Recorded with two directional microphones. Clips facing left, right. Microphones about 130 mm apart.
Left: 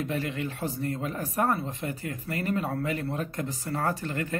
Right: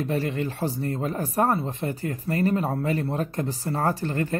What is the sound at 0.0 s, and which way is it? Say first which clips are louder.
Speech: right 4 dB; 35° right (ahead or behind).